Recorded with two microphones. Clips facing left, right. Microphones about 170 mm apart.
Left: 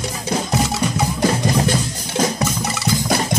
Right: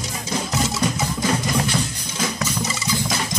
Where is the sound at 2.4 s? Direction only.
65° left (ahead or behind).